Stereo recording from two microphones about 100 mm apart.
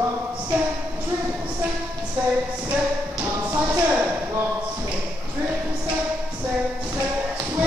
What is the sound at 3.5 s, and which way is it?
Speech, 30° right (ahead or behind).